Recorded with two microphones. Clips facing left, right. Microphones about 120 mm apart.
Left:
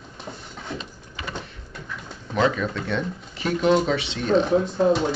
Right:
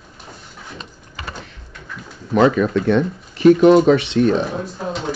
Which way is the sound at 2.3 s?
55° right (ahead or behind).